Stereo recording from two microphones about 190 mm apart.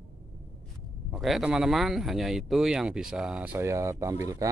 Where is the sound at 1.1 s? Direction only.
Centre (ahead or behind).